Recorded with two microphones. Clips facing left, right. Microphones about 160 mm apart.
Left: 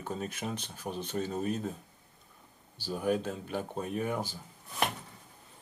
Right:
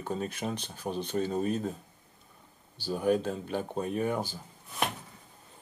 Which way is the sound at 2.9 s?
Centre (ahead or behind).